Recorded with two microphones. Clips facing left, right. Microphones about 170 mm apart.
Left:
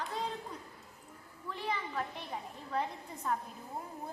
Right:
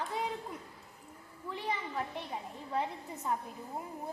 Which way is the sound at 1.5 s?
15° right (ahead or behind).